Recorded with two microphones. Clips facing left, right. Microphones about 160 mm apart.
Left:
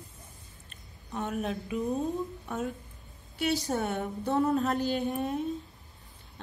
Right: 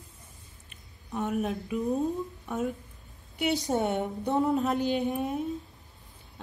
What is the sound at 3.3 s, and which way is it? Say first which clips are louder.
A woman's voice: right 2 dB; 20° right (ahead or behind).